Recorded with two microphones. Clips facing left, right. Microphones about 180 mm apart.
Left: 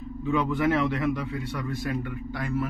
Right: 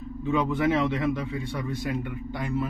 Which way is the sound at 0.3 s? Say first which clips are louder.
Even; 20° right (ahead or behind).